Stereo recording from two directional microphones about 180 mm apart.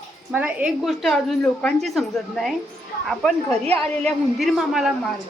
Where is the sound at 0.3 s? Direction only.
10° right (ahead or behind).